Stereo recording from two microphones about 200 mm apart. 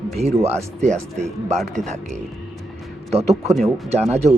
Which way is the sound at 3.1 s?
30° right (ahead or behind).